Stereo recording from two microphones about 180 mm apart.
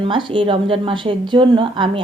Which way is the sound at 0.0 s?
25° right (ahead or behind).